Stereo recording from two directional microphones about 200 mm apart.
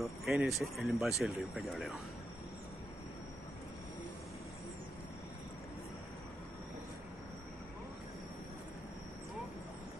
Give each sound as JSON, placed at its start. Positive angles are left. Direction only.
{"t": 0.0, "sound": "speech", "side_deg": 0}